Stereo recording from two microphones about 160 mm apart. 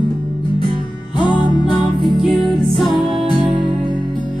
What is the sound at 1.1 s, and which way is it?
Music, 30° left (ahead or behind).